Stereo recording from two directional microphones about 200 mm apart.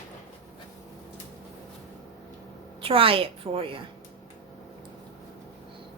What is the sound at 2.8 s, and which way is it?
A woman's voice, 25° right (ahead or behind).